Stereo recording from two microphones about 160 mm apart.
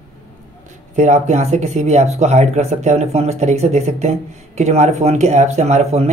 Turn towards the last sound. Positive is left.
turn(degrees=-45)  # may be behind; listen again after turning